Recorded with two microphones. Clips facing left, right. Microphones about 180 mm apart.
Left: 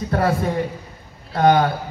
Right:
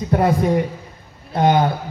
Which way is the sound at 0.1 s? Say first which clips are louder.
Right 3 dB; 20° right (ahead or behind).